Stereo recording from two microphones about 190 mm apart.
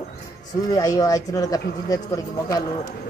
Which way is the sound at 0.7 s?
20° left (ahead or behind).